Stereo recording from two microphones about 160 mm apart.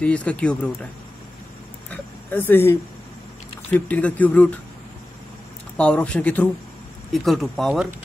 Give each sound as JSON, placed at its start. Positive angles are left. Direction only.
{"t": 0.0, "sound": "speech", "side_deg": 10}
{"t": 1.9, "sound": "a sound", "side_deg": 10}
{"t": 3.7, "sound": "speech", "side_deg": 10}
{"t": 5.8, "sound": "speech", "side_deg": 10}